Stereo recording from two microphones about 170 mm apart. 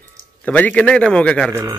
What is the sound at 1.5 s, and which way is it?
Speech, 15° right (ahead or behind).